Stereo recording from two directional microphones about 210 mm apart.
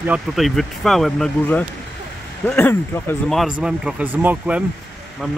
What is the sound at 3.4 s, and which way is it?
Speech, 5° right (ahead or behind).